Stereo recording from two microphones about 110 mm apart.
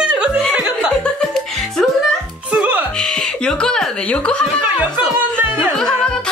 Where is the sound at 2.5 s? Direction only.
15° right (ahead or behind).